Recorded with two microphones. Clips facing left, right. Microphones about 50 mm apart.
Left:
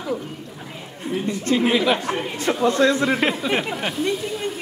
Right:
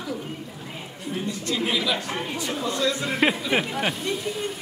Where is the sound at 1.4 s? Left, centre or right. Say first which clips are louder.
Left 8 dB; left.